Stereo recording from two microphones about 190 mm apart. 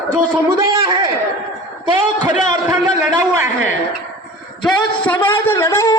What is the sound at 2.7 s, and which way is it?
Speech, 10° right (ahead or behind).